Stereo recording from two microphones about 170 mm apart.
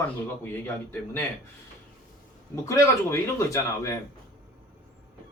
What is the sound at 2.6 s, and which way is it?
Speech, 15° left (ahead or behind).